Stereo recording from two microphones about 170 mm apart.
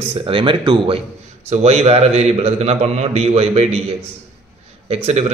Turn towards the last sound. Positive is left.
turn(degrees=-40)  # may be behind; listen again after turning